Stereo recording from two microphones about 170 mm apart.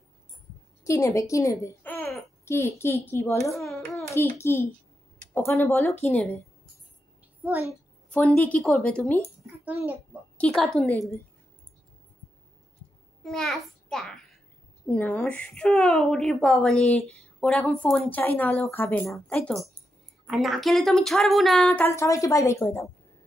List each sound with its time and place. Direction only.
0.8 s a woman's voice: 20° left (ahead or behind)
3.5 s hands: centre (ahead or behind)
4.1 s a woman's voice: 15° left (ahead or behind)
8.5 s speech: centre (ahead or behind)
9.7 s a child's voice: 10° right (ahead or behind)
10.3 s speech: 5° left (ahead or behind)
13.2 s a child's voice: 5° left (ahead or behind)
21.8 s a woman's voice: 15° left (ahead or behind)